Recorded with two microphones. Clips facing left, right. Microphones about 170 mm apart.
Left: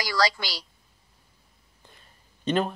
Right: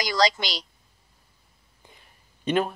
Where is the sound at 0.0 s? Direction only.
20° right (ahead or behind).